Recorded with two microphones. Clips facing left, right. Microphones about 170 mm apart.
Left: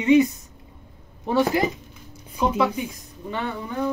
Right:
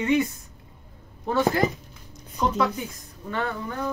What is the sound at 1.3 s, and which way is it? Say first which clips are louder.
Speech: left 2 dB; 15° left (ahead or behind).